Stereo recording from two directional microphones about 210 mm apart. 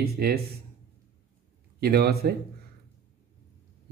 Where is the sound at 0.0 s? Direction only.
45° right (ahead or behind).